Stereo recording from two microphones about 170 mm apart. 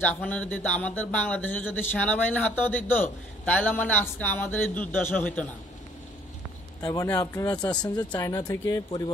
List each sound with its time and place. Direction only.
0.0 s speech: 10° left (ahead or behind)
6.8 s a man's voice: 20° left (ahead or behind)